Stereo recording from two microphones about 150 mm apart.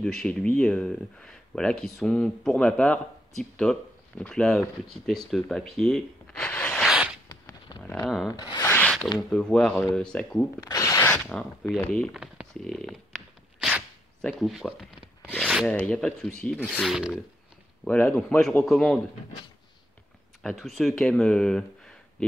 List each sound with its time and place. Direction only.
0.0 s speech: 5° left (ahead or behind)
6.9 s zipper: 5° right (ahead or behind)
7.2 s a sound: 25° left (ahead or behind)
8.3 s rub: 25° left (ahead or behind)
8.6 s zipper: 10° left (ahead or behind)
9.3 s a man's voice: 5° left (ahead or behind)
10.6 s zipper: 25° left (ahead or behind)
11.1 s a man's voice: 5° left (ahead or behind)
12.2 s a sound: centre (ahead or behind)
14.2 s speech: centre (ahead or behind)
17.8 s a man's voice: 10° left (ahead or behind)
20.4 s speech: centre (ahead or behind)